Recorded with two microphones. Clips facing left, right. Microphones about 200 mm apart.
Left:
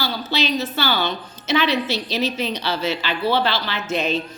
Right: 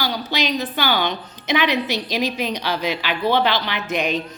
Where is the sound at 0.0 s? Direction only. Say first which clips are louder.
Even; 15° right (ahead or behind).